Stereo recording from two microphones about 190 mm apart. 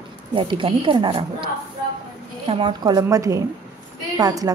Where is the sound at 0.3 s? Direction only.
25° right (ahead or behind).